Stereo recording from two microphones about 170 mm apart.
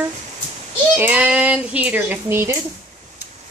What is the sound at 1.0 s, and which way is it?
Speech, 10° right (ahead or behind).